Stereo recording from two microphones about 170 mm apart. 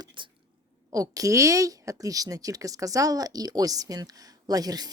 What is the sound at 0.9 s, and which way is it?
A woman's voice, 20° right (ahead or behind).